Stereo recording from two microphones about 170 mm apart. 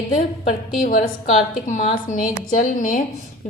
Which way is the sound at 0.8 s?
50° left (ahead or behind).